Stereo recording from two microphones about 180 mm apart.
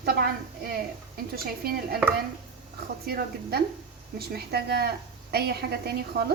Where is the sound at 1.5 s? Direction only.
60° right (ahead or behind).